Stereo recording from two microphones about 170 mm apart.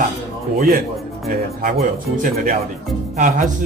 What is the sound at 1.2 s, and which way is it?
Speech, 60° right (ahead or behind).